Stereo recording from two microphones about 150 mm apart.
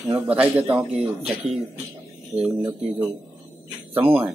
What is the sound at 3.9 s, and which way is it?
Speech, 10° right (ahead or behind).